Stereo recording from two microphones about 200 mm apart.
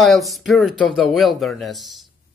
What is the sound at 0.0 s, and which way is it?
Speech, centre (ahead or behind).